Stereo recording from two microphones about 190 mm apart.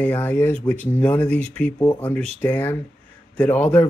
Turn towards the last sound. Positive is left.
turn(degrees=5)  # may be behind; listen again after turning